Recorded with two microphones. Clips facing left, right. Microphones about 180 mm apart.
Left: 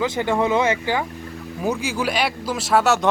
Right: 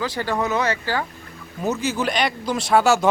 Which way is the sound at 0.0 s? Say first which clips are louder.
Left 3 dB; 20° left (ahead or behind).